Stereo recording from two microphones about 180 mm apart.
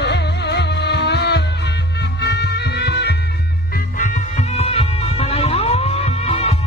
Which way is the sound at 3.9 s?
45° left (ahead or behind).